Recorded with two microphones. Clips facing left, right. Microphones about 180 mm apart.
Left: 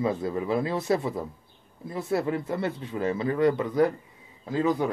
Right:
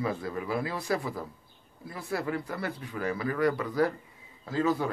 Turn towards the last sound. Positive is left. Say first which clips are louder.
# left 3 dB
turn(degrees=20)  # may be behind; listen again after turning